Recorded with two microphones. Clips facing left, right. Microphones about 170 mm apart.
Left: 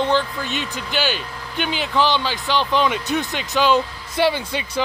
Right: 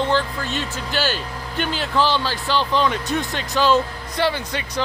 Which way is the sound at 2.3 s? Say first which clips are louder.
Left 1 dB; 20° left (ahead or behind).